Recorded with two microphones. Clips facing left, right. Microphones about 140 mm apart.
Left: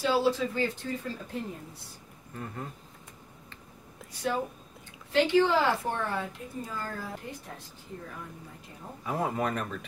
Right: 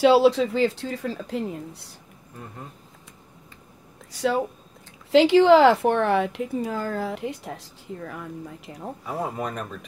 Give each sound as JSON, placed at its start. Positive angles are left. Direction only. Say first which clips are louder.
{"t": 0.0, "sound": "a woman's voice", "louder": "right 10 dB", "side_deg": -80}
{"t": 4.1, "sound": "speech", "louder": "right 7 dB", "side_deg": -90}
{"t": 9.0, "sound": "speech", "louder": "even", "side_deg": -10}